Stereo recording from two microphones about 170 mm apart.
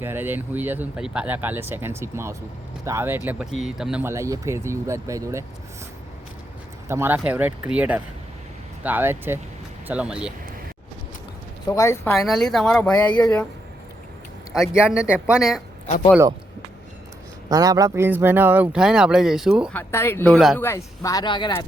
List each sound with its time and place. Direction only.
0.0 s speech: 10° right (ahead or behind)
3.6 s a woman's voice: centre (ahead or behind)
4.0 s speech: 15° right (ahead or behind)
6.8 s a woman's voice: 15° right (ahead or behind)
11.7 s speech: 15° left (ahead or behind)
12.1 s a woman's voice: centre (ahead or behind)
14.5 s a woman's voice: centre (ahead or behind)
17.5 s speech: 20° right (ahead or behind); by 19.7 s 5° right (ahead or behind)
19.7 s speech: 15° left (ahead or behind)
20.6 s speech: 15° left (ahead or behind)